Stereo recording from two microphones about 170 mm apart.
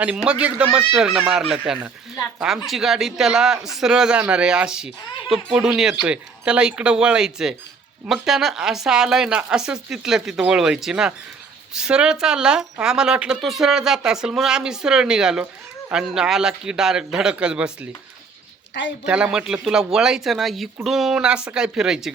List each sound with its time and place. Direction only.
0.0 s a man's voice: 5° right (ahead or behind)
18.7 s speech: 90° left
19.0 s a man's voice: 5° right (ahead or behind)